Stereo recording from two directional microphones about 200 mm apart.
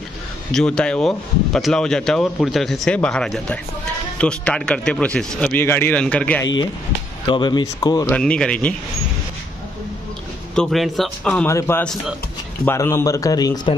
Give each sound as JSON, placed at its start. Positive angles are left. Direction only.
{"t": 0.5, "sound": "speech", "side_deg": 5}
{"t": 7.2, "sound": "speech", "side_deg": 25}
{"t": 8.1, "sound": "speech", "side_deg": 5}
{"t": 10.5, "sound": "speech", "side_deg": 0}
{"t": 11.4, "sound": "speech", "side_deg": 15}